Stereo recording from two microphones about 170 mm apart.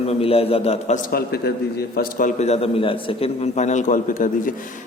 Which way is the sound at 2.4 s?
35° left (ahead or behind).